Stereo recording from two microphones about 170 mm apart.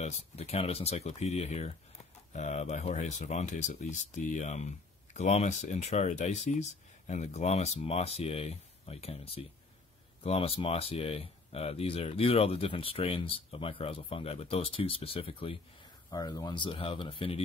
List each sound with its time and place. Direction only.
0.0 s speech: 35° left (ahead or behind)